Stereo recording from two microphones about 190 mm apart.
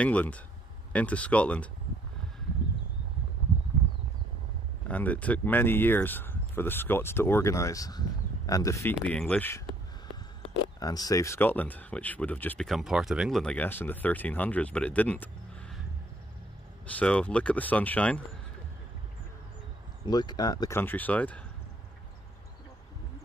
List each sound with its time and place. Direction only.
0.0 s speech: 5° left (ahead or behind)
4.8 s speech: 10° left (ahead or behind)
10.8 s speech: 20° left (ahead or behind)
16.8 s speech: 5° left (ahead or behind)
20.1 s speech: 20° left (ahead or behind)